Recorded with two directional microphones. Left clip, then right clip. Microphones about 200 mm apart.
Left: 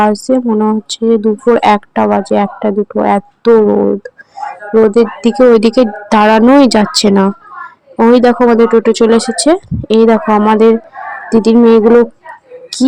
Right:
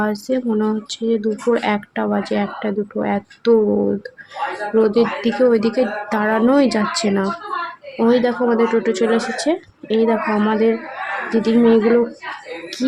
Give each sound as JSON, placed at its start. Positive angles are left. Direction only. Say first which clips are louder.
{"t": 0.0, "sound": "speech", "louder": "left 10 dB", "side_deg": 25}